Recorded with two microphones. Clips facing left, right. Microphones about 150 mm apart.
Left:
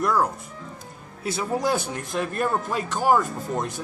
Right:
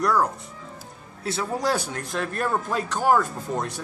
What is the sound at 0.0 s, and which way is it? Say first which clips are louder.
Speech: even; 10° left (ahead or behind).